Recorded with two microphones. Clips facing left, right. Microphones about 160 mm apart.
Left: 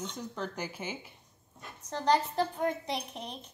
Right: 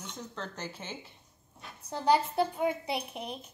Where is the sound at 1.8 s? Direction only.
10° right (ahead or behind).